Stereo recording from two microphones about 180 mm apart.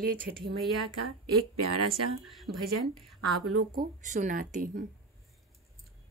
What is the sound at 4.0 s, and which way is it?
Speech, 45° right (ahead or behind).